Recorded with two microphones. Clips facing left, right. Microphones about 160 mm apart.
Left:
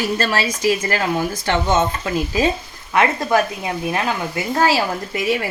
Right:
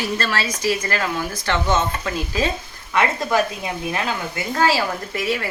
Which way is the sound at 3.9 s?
25° left (ahead or behind).